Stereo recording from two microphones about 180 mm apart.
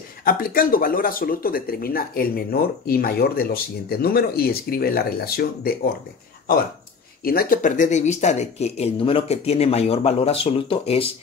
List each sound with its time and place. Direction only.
0.2 s speech: 55° left (ahead or behind)
7.2 s speech: 55° left (ahead or behind); by 11.1 s 30° left (ahead or behind)